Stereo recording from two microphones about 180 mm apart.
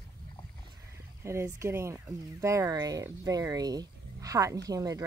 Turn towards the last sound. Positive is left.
turn(degrees=-20)  # may be behind; listen again after turning